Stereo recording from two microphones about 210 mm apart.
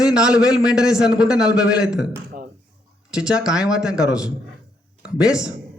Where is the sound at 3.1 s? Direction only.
5° right (ahead or behind).